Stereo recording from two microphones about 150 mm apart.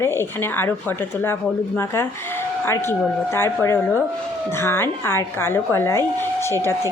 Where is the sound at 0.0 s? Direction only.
15° left (ahead or behind).